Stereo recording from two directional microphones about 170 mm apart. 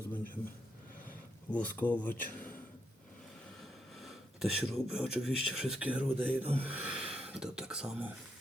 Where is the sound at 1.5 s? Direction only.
10° left (ahead or behind).